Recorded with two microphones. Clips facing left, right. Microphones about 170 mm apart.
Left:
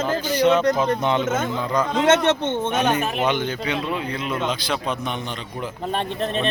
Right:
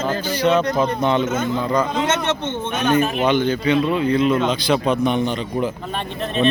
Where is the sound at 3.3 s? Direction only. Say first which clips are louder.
Right 6 dB; 15° left (ahead or behind).